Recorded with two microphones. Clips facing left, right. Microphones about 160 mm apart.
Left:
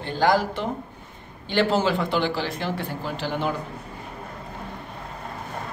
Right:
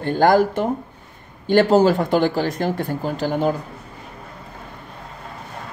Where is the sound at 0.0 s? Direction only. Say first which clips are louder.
Right 6 dB; 50° right (ahead or behind).